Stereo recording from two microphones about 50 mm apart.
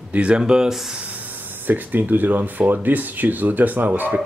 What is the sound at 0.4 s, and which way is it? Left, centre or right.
Speech, centre.